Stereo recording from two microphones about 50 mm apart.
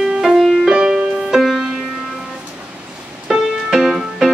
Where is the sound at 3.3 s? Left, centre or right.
Centre.